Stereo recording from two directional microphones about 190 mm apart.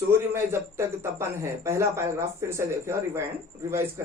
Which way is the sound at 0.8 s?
15° right (ahead or behind).